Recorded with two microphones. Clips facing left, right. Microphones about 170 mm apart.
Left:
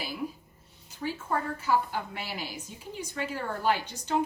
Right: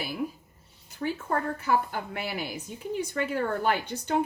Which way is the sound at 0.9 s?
55° right (ahead or behind).